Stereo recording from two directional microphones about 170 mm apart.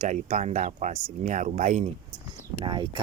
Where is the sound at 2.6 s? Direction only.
30° right (ahead or behind).